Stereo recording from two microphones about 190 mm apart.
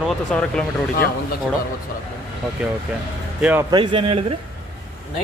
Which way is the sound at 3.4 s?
5° right (ahead or behind).